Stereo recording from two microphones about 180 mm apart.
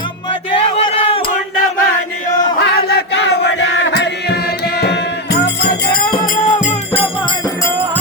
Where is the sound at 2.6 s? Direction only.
75° left (ahead or behind).